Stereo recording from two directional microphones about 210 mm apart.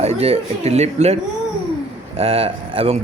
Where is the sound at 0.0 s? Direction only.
30° right (ahead or behind).